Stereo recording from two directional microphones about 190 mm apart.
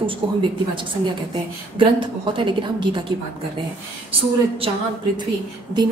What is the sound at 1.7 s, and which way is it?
A woman's voice, 25° right (ahead or behind).